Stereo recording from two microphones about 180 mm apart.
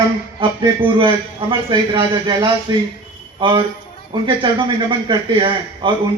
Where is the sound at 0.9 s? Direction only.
30° right (ahead or behind).